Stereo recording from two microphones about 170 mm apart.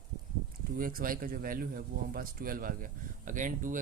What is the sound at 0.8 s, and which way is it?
A man's voice, 55° right (ahead or behind).